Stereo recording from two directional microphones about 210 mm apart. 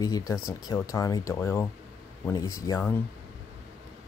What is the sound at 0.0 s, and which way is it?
Speech, 15° left (ahead or behind).